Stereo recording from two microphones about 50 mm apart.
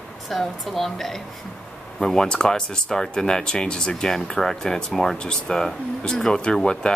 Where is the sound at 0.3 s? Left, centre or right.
Centre.